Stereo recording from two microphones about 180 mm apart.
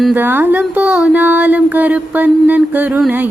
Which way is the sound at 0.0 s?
10° right (ahead or behind).